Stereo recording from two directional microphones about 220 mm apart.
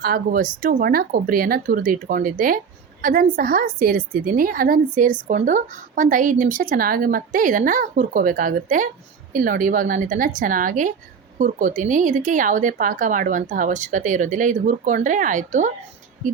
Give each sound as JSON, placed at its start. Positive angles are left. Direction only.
{"t": 0.0, "sound": "a woman's voice", "side_deg": -40}